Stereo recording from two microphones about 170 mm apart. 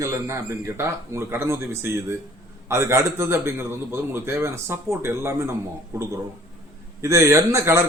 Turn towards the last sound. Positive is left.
turn(degrees=-15)  # may be behind; listen again after turning